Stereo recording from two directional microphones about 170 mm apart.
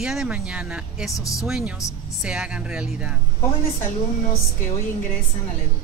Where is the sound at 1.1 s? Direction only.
20° left (ahead or behind).